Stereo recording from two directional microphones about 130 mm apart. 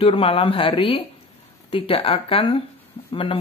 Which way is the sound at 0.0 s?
45° left (ahead or behind).